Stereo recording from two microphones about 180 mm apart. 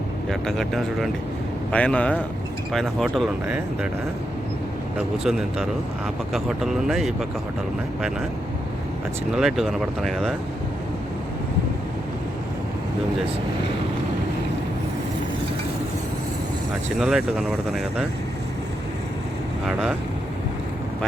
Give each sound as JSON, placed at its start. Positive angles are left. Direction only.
{"t": 0.3, "sound": "speech", "side_deg": 0}
{"t": 4.9, "sound": "speech", "side_deg": 0}
{"t": 9.3, "sound": "speech", "side_deg": 0}
{"t": 17.0, "sound": "speech", "side_deg": 0}